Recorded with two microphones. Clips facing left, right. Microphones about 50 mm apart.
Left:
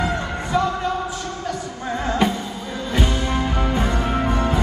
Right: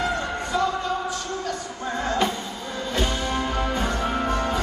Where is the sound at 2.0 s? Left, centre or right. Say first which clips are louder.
Left 4 dB; centre.